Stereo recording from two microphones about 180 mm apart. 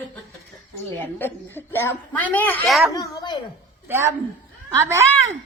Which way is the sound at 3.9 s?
15° right (ahead or behind).